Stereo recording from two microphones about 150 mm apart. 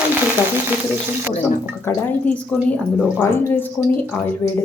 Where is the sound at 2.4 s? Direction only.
5° left (ahead or behind).